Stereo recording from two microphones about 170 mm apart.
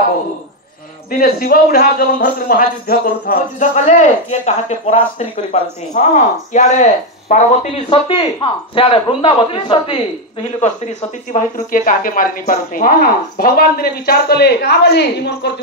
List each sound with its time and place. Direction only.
1.1 s a man's voice: 60° left (ahead or behind); by 9.9 s 30° left (ahead or behind)
10.6 s speech: 45° left (ahead or behind); by 15.5 s 80° left